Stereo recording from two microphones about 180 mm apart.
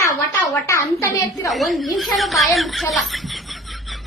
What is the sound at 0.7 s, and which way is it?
Speech, 15° left (ahead or behind).